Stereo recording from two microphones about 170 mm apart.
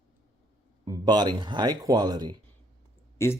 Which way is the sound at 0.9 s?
25° right (ahead or behind).